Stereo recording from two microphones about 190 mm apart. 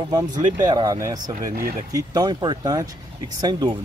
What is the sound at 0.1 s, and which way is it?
Speech, 20° right (ahead or behind).